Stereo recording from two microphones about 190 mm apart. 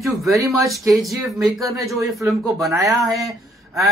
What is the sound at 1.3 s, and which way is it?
Speech, 15° right (ahead or behind).